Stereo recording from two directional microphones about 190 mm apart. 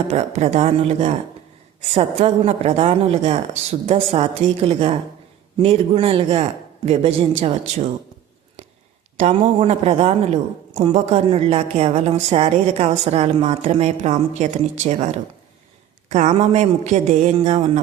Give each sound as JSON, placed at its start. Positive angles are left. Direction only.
{"t": 0.1, "sound": "a woman's voice", "side_deg": -35}
{"t": 9.1, "sound": "a woman's voice", "side_deg": -35}